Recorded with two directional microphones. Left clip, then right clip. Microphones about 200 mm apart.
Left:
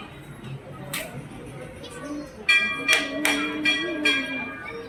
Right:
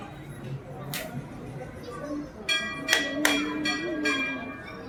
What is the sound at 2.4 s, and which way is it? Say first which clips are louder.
Bell: left 8 dB; 25° right (ahead or behind).